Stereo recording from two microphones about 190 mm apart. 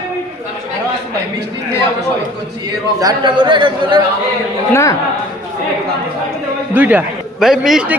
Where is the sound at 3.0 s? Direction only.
20° right (ahead or behind).